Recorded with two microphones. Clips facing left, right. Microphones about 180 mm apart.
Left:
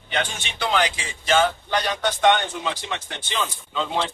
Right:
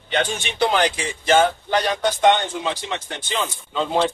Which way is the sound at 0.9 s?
55° right (ahead or behind).